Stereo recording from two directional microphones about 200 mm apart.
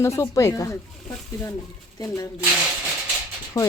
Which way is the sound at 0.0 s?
15° left (ahead or behind).